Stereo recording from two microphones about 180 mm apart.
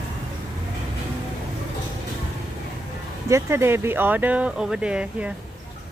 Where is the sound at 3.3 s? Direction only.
15° right (ahead or behind).